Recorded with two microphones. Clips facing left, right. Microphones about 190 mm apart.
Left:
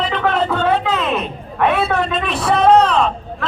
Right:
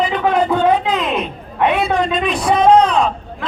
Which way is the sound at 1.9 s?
5° left (ahead or behind).